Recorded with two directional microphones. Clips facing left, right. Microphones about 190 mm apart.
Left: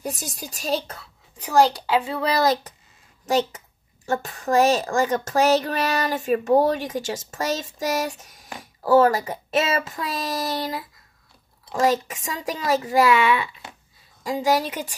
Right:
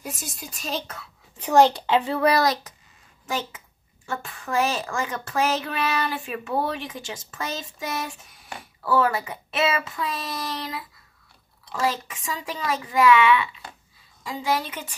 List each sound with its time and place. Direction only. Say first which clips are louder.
0.0 s speech: left 5 dB; 35° left (ahead or behind)
1.4 s a child's voice: right 1 dB; centre (ahead or behind)
3.5 s a woman's voice: left 3 dB; 40° left (ahead or behind)